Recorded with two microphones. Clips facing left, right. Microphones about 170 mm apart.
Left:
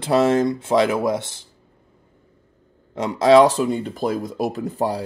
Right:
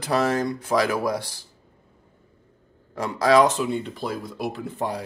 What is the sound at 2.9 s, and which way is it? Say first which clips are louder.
Speech: left 5 dB; 20° left (ahead or behind).